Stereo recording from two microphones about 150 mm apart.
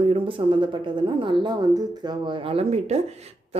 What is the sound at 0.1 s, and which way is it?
Speech, 35° right (ahead or behind).